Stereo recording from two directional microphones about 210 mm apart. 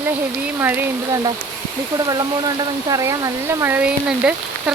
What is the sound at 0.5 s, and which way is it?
Speech, 10° right (ahead or behind).